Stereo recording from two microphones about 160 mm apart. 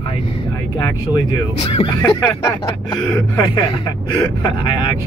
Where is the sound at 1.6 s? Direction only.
35° left (ahead or behind).